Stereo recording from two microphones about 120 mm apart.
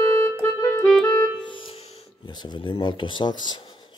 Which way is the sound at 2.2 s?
40° left (ahead or behind).